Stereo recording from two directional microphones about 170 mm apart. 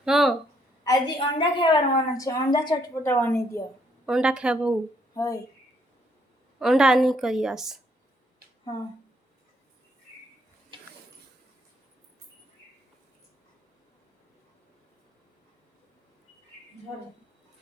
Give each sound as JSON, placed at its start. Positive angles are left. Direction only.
{"t": 0.0, "sound": "a sound", "side_deg": 0}
{"t": 0.9, "sound": "a woman's voice", "side_deg": 30}
{"t": 4.0, "sound": "a woman's voice", "side_deg": -5}
{"t": 5.1, "sound": "a woman's voice", "side_deg": 20}
{"t": 6.6, "sound": "a woman's voice", "side_deg": 0}
{"t": 10.7, "sound": "a sound", "side_deg": -30}